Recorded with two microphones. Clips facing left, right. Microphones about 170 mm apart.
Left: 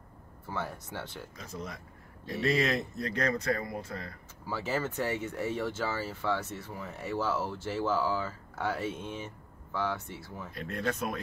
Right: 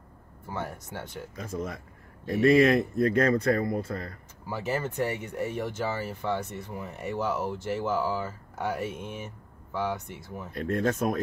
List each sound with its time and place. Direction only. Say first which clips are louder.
0.5 s speech: right 2 dB; 15° right (ahead or behind)
1.4 s speech: right 8 dB; 50° right (ahead or behind)
4.5 s speech: right 2 dB; 15° right (ahead or behind)
10.5 s speech: right 7 dB; 45° right (ahead or behind)